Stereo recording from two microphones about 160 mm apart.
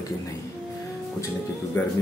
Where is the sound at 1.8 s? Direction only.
15° left (ahead or behind).